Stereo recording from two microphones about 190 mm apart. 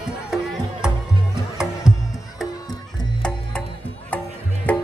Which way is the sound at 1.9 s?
5° right (ahead or behind).